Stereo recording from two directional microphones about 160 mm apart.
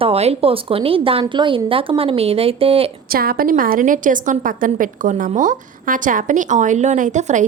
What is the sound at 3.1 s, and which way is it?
A woman's voice, 65° right (ahead or behind).